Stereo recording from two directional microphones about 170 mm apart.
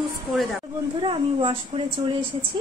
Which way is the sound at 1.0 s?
30° right (ahead or behind).